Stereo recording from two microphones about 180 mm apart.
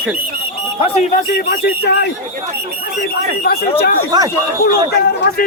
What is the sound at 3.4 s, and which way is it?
Speech, 60° left (ahead or behind).